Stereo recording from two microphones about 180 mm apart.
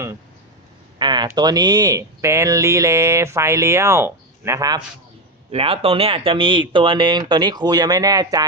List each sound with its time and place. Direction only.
0.9 s a sound: 25° right (ahead or behind)
1.4 s speech: 20° right (ahead or behind)
5.5 s speech: 35° right (ahead or behind)